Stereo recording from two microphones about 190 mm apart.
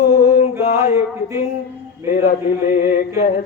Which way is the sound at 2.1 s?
45° left (ahead or behind).